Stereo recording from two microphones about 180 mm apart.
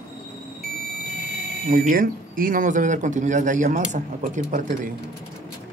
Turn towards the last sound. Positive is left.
turn(degrees=-45)  # may be behind; listen again after turning